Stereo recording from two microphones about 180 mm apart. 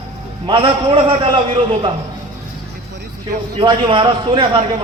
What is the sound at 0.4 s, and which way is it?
A man's voice, 30° right (ahead or behind).